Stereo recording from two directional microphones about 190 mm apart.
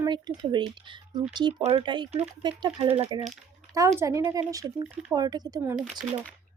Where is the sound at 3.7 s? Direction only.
15° right (ahead or behind).